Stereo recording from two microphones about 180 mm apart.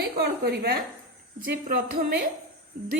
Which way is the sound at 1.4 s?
50° right (ahead or behind).